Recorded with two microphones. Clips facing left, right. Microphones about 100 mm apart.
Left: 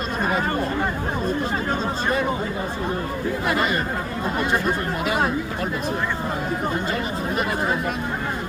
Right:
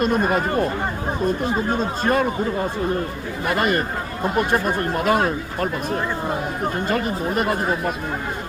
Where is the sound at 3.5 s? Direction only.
55° right (ahead or behind).